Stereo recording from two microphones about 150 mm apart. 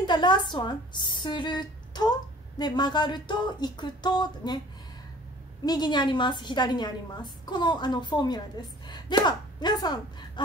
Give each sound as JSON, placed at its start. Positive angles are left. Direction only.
{"t": 0.0, "sound": "a woman's voice", "side_deg": 30}
{"t": 5.7, "sound": "a woman's voice", "side_deg": 30}